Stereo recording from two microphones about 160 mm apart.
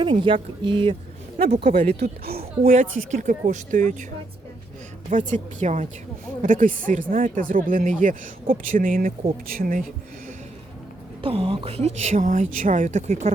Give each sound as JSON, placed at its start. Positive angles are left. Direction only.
{"t": 0.0, "sound": "speech", "side_deg": -30}
{"t": 2.0, "sound": "speech", "side_deg": -75}
{"t": 2.6, "sound": "speech", "side_deg": -55}
{"t": 5.0, "sound": "speech", "side_deg": -50}
{"t": 11.2, "sound": "speech", "side_deg": -35}